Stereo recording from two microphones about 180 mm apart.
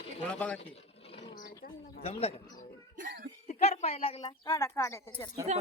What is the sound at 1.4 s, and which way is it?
Speech, 55° left (ahead or behind).